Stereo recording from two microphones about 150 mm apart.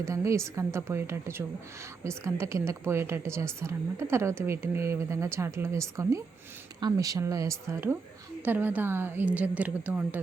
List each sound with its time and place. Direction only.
0.0 s a woman's voice: 20° right (ahead or behind)